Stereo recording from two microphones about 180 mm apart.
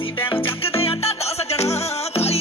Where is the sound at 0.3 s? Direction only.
30° left (ahead or behind).